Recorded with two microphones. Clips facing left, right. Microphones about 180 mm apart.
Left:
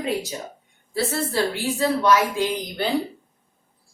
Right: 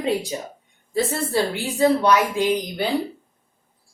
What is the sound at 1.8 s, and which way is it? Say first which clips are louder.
A woman's voice: right 2 dB; 20° right (ahead or behind).